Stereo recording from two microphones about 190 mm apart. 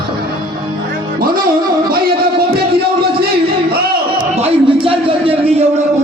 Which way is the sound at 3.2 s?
55° right (ahead or behind).